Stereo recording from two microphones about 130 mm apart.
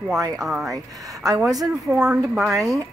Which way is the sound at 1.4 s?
5° right (ahead or behind).